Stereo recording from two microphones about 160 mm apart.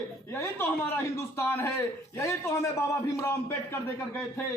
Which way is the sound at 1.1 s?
15° left (ahead or behind).